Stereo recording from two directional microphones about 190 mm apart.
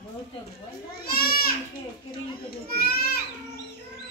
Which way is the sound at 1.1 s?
50° left (ahead or behind).